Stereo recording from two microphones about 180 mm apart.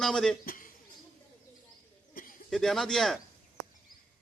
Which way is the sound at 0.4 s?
50° left (ahead or behind).